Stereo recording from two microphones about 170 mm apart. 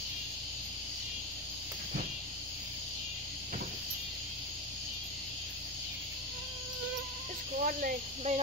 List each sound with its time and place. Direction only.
7.5 s speech: 50° right (ahead or behind)